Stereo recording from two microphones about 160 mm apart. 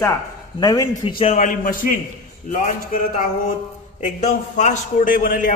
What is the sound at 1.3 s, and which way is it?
A man's voice, 50° left (ahead or behind).